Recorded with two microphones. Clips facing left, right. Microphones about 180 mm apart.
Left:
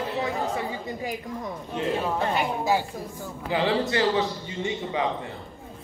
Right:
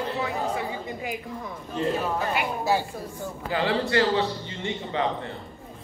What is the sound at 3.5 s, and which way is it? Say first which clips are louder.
Speech: left 1 dB; 15° left (ahead or behind).